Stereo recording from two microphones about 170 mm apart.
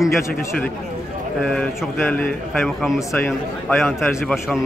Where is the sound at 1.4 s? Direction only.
5° left (ahead or behind).